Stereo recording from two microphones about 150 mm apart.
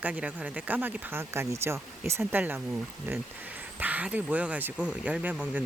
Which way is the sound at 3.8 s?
10° right (ahead or behind).